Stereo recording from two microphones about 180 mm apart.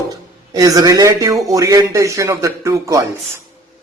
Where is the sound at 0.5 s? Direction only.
20° right (ahead or behind).